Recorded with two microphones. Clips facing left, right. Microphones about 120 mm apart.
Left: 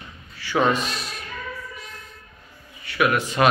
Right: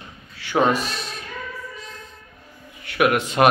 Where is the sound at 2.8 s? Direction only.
60° right (ahead or behind).